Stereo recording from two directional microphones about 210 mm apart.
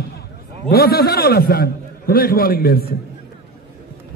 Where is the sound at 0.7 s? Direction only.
45° left (ahead or behind).